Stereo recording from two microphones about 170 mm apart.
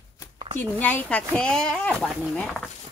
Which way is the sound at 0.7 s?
10° left (ahead or behind).